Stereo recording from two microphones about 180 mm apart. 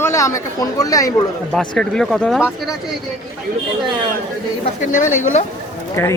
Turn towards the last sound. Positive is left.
turn(degrees=15)  # may be behind; listen again after turning